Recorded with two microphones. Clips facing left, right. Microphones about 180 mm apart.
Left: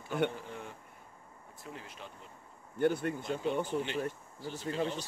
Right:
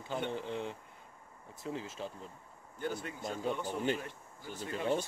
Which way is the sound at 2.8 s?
60° left (ahead or behind).